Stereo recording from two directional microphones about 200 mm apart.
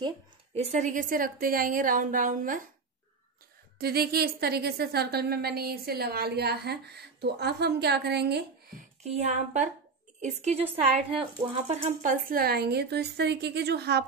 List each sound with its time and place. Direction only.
0.7 s a woman's voice: 40° right (ahead or behind)
3.7 s a woman's voice: 50° right (ahead or behind)
9.0 s a sound: 35° right (ahead or behind)
11.4 s a woman's voice: 35° right (ahead or behind); by 14.0 s 55° right (ahead or behind)